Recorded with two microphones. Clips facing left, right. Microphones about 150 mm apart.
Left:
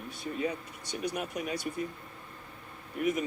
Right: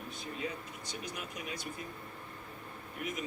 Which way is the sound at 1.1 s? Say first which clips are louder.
Left 10 dB; 70° left (ahead or behind).